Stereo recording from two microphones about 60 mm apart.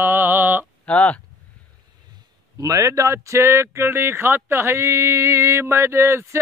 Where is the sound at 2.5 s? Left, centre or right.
Right.